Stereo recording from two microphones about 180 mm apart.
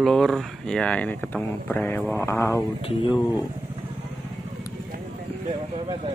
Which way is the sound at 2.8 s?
25° left (ahead or behind).